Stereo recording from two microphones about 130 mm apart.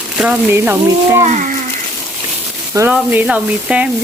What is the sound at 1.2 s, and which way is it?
Speech, 80° right.